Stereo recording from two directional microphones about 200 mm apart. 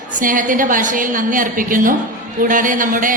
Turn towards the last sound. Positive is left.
turn(degrees=-40)  # may be behind; listen again after turning